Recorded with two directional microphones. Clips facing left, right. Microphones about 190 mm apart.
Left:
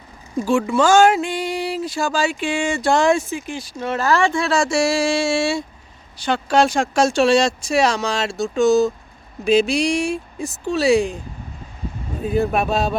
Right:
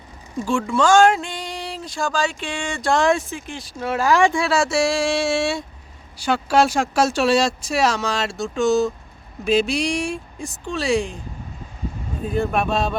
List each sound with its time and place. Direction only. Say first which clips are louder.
0.4 s speech: left 2 dB; 5° left (ahead or behind)
12.2 s speech: left 2 dB; 5° left (ahead or behind)